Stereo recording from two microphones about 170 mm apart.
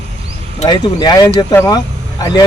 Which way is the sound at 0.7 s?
25° left (ahead or behind).